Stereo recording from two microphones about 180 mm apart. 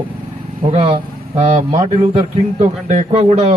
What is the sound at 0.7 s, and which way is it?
A man's voice, 30° right (ahead or behind).